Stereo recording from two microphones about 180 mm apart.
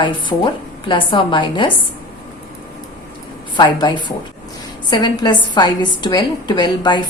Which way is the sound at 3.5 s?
25° left (ahead or behind).